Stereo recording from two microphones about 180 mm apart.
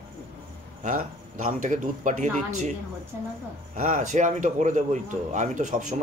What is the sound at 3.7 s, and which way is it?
A man's voice, 45° right (ahead or behind).